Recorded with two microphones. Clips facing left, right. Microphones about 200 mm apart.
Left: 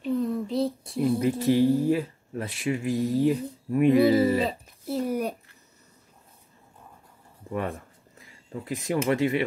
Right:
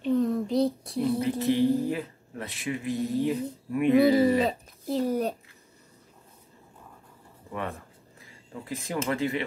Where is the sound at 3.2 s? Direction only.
35° left (ahead or behind).